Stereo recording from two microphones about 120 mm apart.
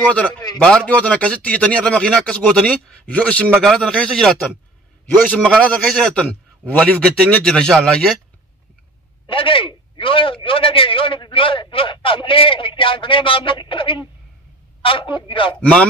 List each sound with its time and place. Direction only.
0.6 s a man's voice: 10° left (ahead or behind)
5.3 s speech: 10° left (ahead or behind)
9.3 s a man's voice: 45° left (ahead or behind)